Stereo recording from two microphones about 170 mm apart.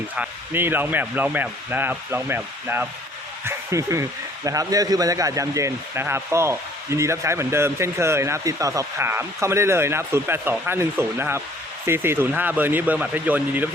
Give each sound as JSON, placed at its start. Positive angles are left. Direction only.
{"t": 0.2, "sound": "a man's voice", "side_deg": -10}